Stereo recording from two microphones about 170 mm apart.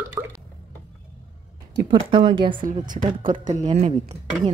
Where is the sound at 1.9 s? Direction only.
30° right (ahead or behind).